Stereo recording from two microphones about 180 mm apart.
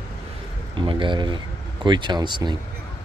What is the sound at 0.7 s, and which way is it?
Speech, 25° right (ahead or behind).